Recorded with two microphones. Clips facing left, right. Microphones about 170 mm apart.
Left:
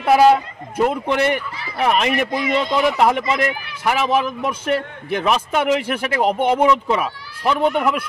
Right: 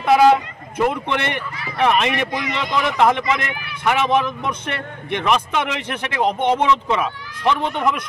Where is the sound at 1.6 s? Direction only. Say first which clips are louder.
Right 5 dB; 40° left (ahead or behind).